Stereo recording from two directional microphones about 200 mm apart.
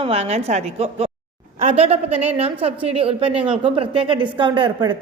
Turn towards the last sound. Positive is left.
turn(degrees=-25)  # may be behind; listen again after turning